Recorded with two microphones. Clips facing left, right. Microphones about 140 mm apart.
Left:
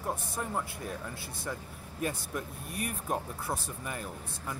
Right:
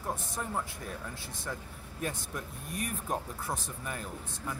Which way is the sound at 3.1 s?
10° left (ahead or behind).